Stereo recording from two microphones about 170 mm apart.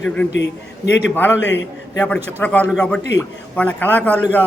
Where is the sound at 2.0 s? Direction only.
10° left (ahead or behind).